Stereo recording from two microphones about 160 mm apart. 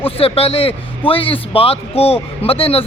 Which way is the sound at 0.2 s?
35° left (ahead or behind).